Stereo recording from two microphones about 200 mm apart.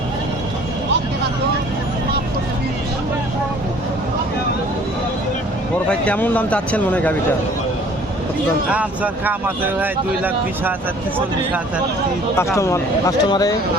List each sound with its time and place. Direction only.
5.9 s speech: 5° left (ahead or behind)
8.7 s speech: 10° right (ahead or behind)
12.5 s speech: 15° left (ahead or behind)